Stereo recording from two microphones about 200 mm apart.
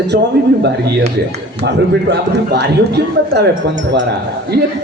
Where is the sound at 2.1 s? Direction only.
55° right (ahead or behind).